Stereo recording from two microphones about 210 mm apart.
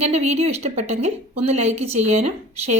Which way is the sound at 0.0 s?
30° right (ahead or behind).